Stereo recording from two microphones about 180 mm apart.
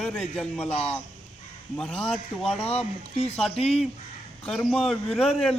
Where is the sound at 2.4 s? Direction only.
35° left (ahead or behind).